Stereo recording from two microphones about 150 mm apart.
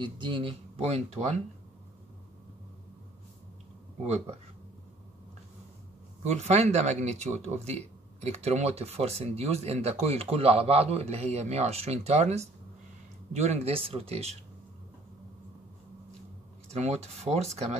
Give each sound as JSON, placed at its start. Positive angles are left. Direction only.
{"t": 0.0, "sound": "speech", "side_deg": -35}
{"t": 6.2, "sound": "speech", "side_deg": -50}
{"t": 16.6, "sound": "speech", "side_deg": -45}